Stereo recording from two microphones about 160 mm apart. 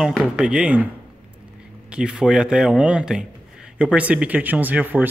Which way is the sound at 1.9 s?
5° right (ahead or behind).